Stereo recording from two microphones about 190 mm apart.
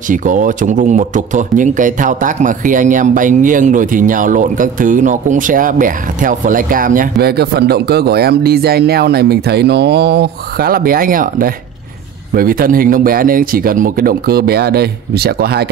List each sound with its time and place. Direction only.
0.1 s speech: 45° right (ahead or behind)